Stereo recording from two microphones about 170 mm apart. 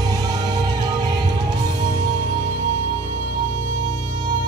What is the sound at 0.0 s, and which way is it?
Music, 20° right (ahead or behind).